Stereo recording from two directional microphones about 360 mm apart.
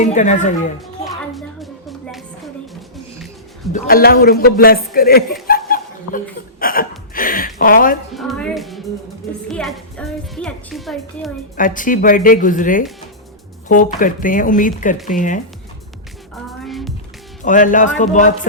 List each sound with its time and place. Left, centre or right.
0.0 s a man's voice: centre
1.6 s music: centre
3.7 s a man's voice: left
5.5 s chuckle: left
6.6 s hiccup: left
7.1 s speech: left
8.1 s speech: centre
11.5 s a man's voice: left
16.3 s music: centre
17.4 s a man's voice: left